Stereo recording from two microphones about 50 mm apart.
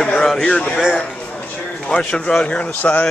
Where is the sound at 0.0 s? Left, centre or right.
Centre.